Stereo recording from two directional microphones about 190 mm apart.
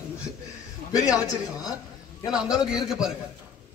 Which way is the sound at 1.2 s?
20° left (ahead or behind).